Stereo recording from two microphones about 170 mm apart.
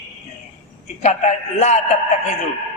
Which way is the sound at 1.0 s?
40° left (ahead or behind).